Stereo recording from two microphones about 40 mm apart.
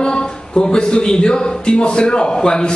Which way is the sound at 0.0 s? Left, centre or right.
Left.